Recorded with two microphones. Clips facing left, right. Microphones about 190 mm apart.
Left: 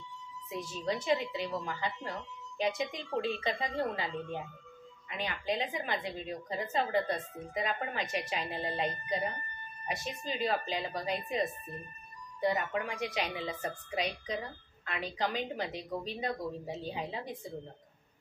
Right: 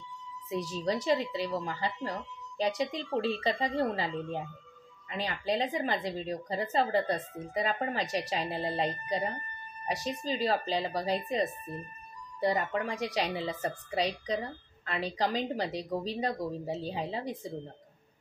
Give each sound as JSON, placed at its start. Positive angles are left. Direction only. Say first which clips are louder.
{"t": 0.5, "sound": "a woman's voice", "louder": "right 4 dB", "side_deg": -35}